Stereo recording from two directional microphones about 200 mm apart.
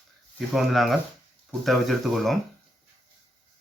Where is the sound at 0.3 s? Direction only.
Centre (ahead or behind).